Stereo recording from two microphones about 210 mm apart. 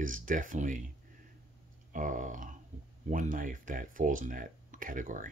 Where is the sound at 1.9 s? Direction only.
40° right (ahead or behind).